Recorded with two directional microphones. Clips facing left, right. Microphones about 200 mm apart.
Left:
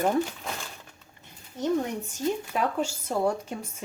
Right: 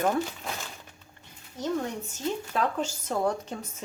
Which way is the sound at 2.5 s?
10° left (ahead or behind).